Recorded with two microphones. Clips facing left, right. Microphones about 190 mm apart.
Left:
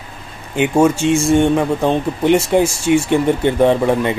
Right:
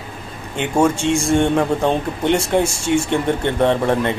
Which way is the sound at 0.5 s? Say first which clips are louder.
Left 4 dB; 5° left (ahead or behind).